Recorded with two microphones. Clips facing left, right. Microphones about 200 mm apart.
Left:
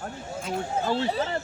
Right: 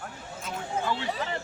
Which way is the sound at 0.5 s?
40° left (ahead or behind).